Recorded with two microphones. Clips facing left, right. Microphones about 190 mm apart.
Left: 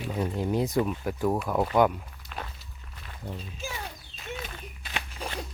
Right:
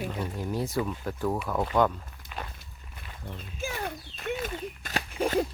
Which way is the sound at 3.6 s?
55° right (ahead or behind).